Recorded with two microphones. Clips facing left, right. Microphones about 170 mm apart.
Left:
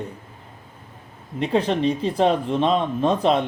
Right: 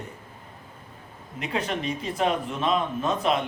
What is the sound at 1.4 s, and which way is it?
A man's voice, 35° left (ahead or behind).